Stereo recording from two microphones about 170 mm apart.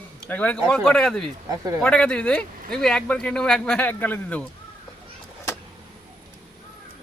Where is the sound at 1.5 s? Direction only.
20° right (ahead or behind).